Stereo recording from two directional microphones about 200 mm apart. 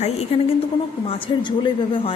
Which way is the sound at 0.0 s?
30° left (ahead or behind).